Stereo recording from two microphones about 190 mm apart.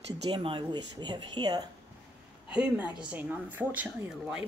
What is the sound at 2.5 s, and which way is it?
A woman's voice, 5° right (ahead or behind).